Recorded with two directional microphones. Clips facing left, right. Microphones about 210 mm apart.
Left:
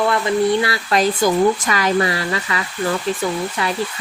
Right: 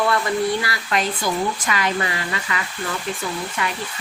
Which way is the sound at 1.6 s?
40° left (ahead or behind).